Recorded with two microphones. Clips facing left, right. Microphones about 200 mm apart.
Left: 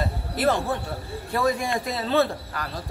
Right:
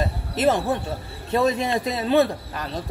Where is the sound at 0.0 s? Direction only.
20° right (ahead or behind).